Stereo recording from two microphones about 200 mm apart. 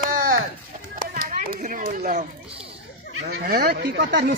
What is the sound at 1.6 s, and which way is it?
Speech, 40° right (ahead or behind).